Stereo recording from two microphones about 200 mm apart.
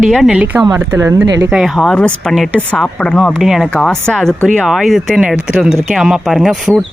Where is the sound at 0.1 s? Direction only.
5° right (ahead or behind).